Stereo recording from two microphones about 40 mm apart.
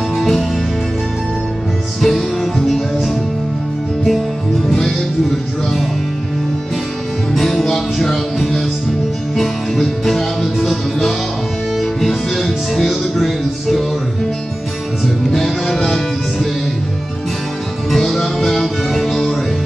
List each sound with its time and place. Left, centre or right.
0.2 s music: centre
2.0 s music: centre
4.6 s music: centre
7.3 s music: centre
15.3 s music: centre
17.9 s music: centre